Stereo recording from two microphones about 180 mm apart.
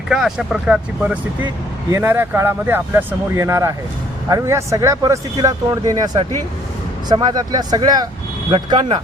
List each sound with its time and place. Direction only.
0.1 s speech: centre (ahead or behind); by 9.0 s 25° right (ahead or behind)